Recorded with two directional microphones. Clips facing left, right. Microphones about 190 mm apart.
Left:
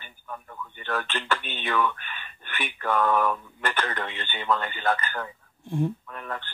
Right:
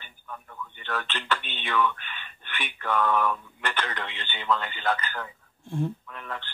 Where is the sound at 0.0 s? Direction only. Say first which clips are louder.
Left 2 dB; 45° left (ahead or behind).